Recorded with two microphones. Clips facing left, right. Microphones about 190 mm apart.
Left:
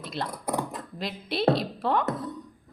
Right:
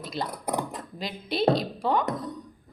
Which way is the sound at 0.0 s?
Centre (ahead or behind).